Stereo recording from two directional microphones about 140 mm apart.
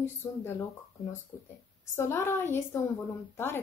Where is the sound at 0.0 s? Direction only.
15° left (ahead or behind).